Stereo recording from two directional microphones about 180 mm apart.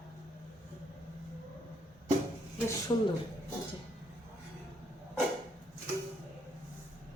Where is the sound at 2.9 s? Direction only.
25° left (ahead or behind).